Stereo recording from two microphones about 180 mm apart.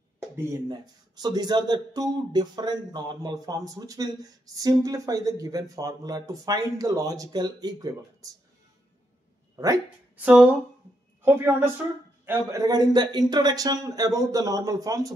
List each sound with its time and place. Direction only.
0.5 s speech: 20° right (ahead or behind)
10.2 s a woman's voice: 5° right (ahead or behind)